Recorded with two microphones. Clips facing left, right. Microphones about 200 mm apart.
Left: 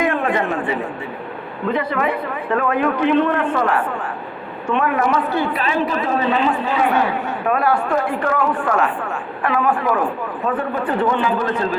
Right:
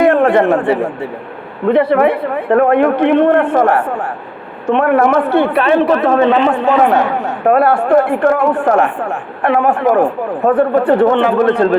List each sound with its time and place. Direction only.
0.1 s a man's voice: 65° right (ahead or behind); by 4.1 s 50° right (ahead or behind)
4.6 s a man's voice: 60° right (ahead or behind); by 10.6 s 45° right (ahead or behind)
11.0 s a man's voice: 65° right (ahead or behind)